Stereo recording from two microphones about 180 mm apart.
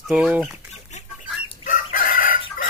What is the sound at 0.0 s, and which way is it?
Speech, 5° right (ahead or behind).